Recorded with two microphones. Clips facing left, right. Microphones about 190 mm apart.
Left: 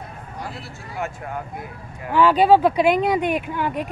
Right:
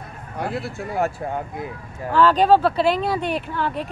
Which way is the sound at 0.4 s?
60° right (ahead or behind).